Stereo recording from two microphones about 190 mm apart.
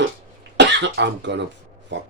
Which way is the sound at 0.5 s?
70° right (ahead or behind).